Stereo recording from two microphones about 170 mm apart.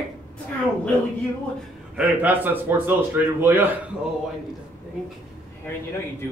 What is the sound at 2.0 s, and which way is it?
A man's voice, 10° right (ahead or behind).